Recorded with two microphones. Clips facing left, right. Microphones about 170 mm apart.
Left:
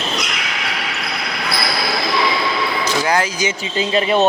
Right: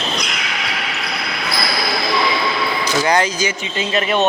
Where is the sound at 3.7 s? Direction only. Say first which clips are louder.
Left 3 dB; 30° left (ahead or behind).